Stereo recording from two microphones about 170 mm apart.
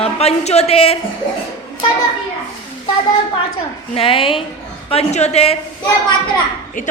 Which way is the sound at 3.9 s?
35° left (ahead or behind).